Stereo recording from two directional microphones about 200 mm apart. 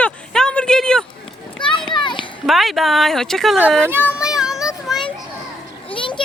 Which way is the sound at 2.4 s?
Centre (ahead or behind).